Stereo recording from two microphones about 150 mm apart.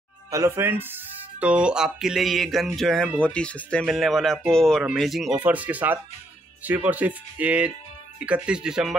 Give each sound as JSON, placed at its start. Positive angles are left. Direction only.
{"t": 0.3, "sound": "speech", "side_deg": -20}